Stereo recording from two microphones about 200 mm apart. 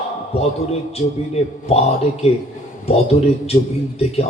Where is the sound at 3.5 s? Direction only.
30° left (ahead or behind).